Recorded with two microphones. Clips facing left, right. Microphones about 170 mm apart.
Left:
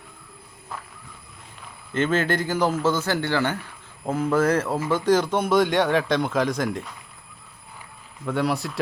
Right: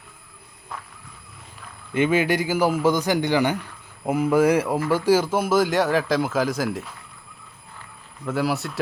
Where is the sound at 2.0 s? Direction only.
10° right (ahead or behind).